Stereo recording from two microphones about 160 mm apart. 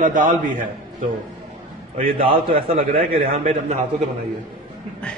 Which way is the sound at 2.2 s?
35° right (ahead or behind).